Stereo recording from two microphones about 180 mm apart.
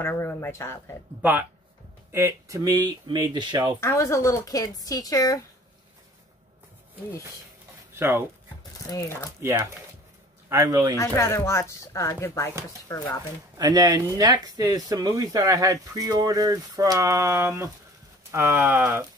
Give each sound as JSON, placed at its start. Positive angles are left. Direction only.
{"t": 0.0, "sound": "speech", "side_deg": 15}
{"t": 2.1, "sound": "speech", "side_deg": -15}
{"t": 3.8, "sound": "speech", "side_deg": 15}
{"t": 7.9, "sound": "speech", "side_deg": -15}
{"t": 9.4, "sound": "speech", "side_deg": -15}
{"t": 11.0, "sound": "speech", "side_deg": 15}
{"t": 13.6, "sound": "speech", "side_deg": -20}